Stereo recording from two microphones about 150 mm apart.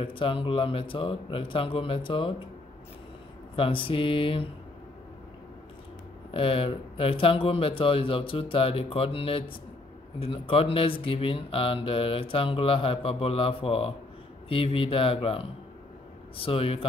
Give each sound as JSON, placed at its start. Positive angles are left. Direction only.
{"t": 0.0, "sound": "speech", "side_deg": 35}
{"t": 3.5, "sound": "speech", "side_deg": 35}
{"t": 6.3, "sound": "speech", "side_deg": 35}